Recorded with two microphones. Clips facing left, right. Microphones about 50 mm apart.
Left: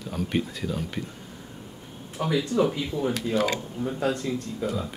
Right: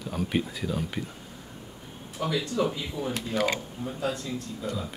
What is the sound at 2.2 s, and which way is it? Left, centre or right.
Speech, centre.